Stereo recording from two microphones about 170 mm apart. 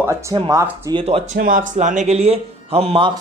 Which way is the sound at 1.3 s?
55° right (ahead or behind).